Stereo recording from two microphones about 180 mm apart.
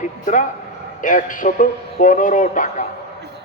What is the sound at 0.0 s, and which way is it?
A man's voice, 45° left (ahead or behind).